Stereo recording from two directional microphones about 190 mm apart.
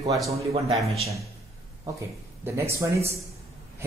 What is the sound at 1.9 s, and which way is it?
Speech, 15° right (ahead or behind).